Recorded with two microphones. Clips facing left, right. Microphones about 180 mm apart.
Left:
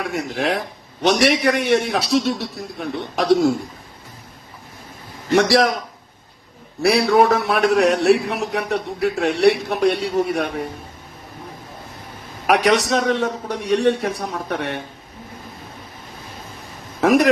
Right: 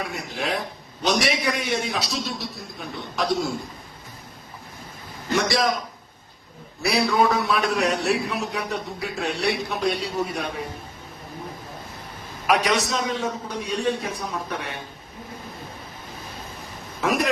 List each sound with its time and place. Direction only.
0.3 s a man's voice: 65° left (ahead or behind)
5.3 s a man's voice: 65° left (ahead or behind)
6.8 s a man's voice: 70° left (ahead or behind)
12.5 s a man's voice: 75° left (ahead or behind)